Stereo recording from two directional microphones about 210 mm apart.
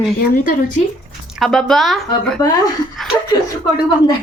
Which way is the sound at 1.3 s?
Centre (ahead or behind).